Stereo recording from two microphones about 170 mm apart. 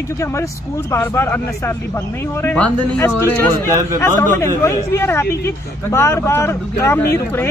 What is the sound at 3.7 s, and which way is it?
Speech, 15° right (ahead or behind).